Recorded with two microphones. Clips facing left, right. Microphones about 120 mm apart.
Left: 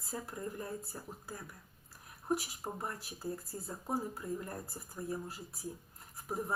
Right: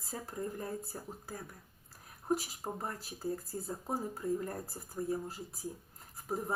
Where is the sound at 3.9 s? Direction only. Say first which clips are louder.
Right 2 dB; 30° right (ahead or behind).